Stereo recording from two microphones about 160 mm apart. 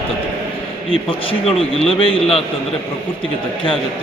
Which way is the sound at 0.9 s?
35° left (ahead or behind).